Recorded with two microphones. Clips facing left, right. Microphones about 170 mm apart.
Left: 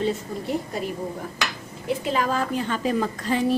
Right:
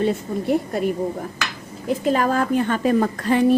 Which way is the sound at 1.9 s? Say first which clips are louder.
Right 5 dB; 50° right (ahead or behind).